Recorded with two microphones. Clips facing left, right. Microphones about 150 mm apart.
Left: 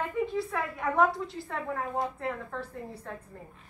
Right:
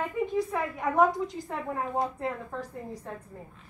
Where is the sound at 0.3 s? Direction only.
20° right (ahead or behind).